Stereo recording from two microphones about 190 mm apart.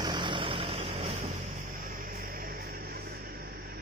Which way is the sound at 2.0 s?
50° right (ahead or behind).